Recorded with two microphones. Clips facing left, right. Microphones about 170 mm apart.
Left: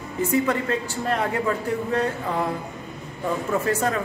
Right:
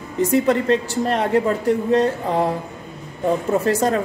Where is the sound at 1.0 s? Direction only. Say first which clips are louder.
Right 4 dB; 30° right (ahead or behind).